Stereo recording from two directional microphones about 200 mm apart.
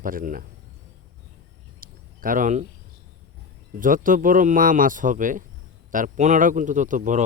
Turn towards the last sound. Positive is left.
turn(degrees=-40)  # may be behind; listen again after turning